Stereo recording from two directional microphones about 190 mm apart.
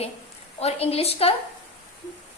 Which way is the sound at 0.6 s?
30° left (ahead or behind).